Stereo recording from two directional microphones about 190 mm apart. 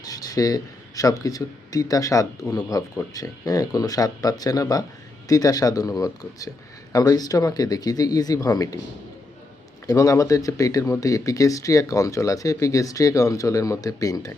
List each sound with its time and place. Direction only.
0.0 s speech: 20° left (ahead or behind)
9.8 s speech: 20° left (ahead or behind)